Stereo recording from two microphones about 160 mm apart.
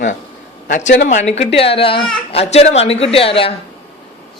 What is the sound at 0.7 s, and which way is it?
A man's voice, 50° left (ahead or behind).